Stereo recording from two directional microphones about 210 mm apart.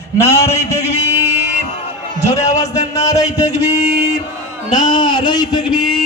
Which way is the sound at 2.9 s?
15° left (ahead or behind).